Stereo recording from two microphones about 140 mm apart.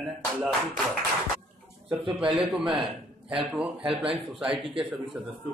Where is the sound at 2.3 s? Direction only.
10° right (ahead or behind).